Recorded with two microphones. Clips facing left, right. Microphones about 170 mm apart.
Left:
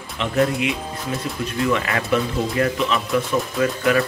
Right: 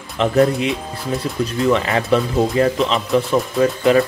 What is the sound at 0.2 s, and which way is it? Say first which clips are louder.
Speech: right 8 dB; 40° right (ahead or behind).